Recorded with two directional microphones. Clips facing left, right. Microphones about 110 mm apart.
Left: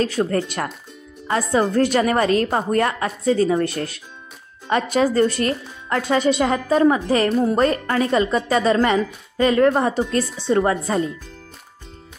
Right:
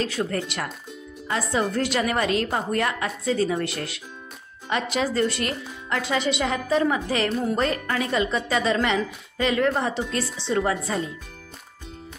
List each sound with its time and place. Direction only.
0.0 s a woman's voice: 45° left (ahead or behind)